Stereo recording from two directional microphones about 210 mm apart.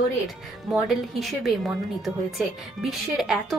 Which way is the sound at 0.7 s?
Centre (ahead or behind).